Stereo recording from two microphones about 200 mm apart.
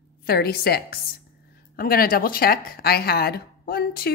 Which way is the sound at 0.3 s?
50° left (ahead or behind).